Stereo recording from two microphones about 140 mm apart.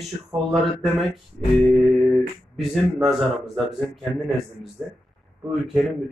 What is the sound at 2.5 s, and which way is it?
Speech, centre (ahead or behind).